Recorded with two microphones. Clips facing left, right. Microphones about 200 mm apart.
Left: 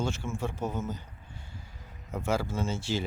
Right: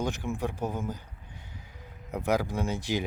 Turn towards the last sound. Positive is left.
turn(degrees=-15)  # may be behind; listen again after turning